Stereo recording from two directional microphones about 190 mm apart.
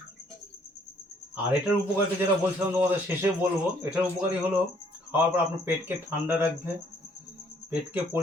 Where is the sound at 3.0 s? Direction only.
10° right (ahead or behind).